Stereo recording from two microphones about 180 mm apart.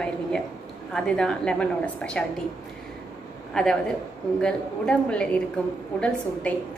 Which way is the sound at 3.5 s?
5° left (ahead or behind).